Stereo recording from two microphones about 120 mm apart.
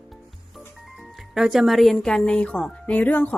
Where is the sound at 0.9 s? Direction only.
5° right (ahead or behind).